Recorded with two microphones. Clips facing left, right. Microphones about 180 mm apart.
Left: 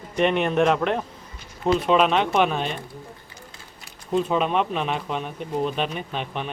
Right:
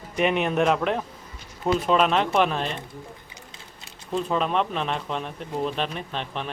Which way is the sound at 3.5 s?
20° right (ahead or behind).